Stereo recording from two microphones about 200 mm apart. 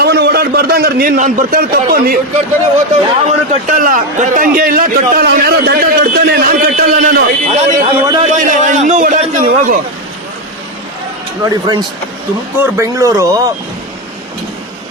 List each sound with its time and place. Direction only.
0.0 s a man's voice: 55° right (ahead or behind)
2.9 s a man's voice: 40° right (ahead or behind)
11.4 s speech: 20° right (ahead or behind)